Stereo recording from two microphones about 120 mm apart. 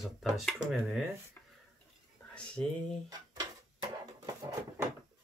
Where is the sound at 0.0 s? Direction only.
Centre (ahead or behind).